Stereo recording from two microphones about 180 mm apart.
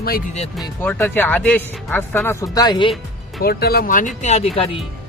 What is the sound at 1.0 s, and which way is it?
Speech, 10° left (ahead or behind).